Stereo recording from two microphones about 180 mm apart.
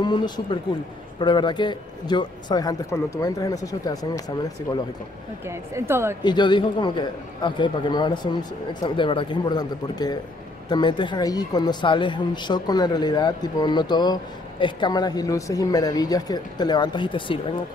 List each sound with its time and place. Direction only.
0.0 s speech: 25° left (ahead or behind)
5.4 s speech: 15° right (ahead or behind)
6.2 s speech: 25° left (ahead or behind)